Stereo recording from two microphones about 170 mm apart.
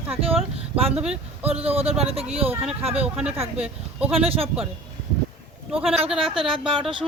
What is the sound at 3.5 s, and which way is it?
Speech, 5° right (ahead or behind).